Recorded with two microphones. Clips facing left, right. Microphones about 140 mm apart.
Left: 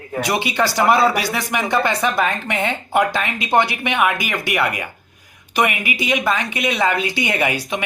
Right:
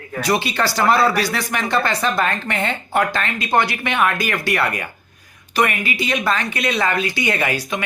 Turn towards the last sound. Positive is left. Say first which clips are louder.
# left 1 dB
turn(degrees=20)  # may be behind; listen again after turning